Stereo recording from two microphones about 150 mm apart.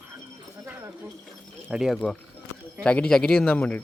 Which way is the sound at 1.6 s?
5° right (ahead or behind).